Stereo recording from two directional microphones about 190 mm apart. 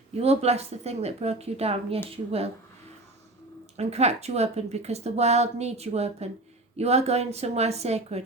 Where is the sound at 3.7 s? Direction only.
35° right (ahead or behind).